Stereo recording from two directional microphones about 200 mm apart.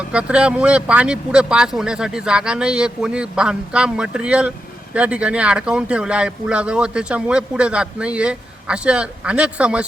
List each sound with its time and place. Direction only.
0.1 s speech: 5° right (ahead or behind)